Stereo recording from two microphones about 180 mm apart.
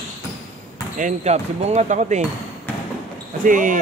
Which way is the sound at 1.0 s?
40° right (ahead or behind).